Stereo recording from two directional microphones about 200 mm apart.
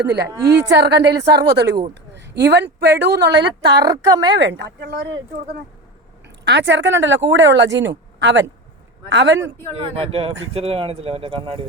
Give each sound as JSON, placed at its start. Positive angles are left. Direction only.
{"t": 0.0, "sound": "speech", "side_deg": -55}
{"t": 0.3, "sound": "a woman's voice", "side_deg": -20}
{"t": 0.5, "sound": "speech", "side_deg": -55}
{"t": 3.8, "sound": "speech", "side_deg": -20}
{"t": 4.3, "sound": "speech", "side_deg": -60}
{"t": 6.4, "sound": "speech", "side_deg": -60}
{"t": 10.0, "sound": "speech", "side_deg": -25}